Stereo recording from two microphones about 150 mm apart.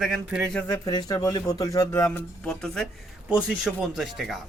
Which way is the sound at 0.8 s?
25° left (ahead or behind).